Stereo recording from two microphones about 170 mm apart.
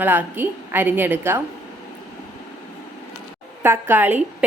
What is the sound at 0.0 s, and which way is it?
A woman's voice, 10° right (ahead or behind).